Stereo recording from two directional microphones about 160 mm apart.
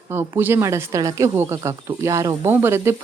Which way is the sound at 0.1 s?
15° right (ahead or behind).